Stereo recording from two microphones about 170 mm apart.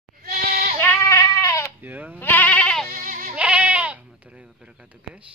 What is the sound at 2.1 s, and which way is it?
Sheep, 10° left (ahead or behind).